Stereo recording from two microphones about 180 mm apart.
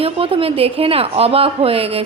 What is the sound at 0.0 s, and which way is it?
A woman's voice, 30° right (ahead or behind).